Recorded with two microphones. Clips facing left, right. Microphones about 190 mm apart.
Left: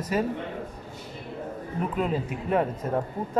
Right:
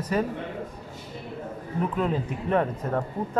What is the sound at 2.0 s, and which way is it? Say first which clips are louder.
Speech: right 1 dB; 10° left (ahead or behind).